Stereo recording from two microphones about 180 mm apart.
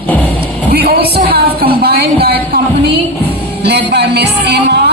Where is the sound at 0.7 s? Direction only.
60° right (ahead or behind).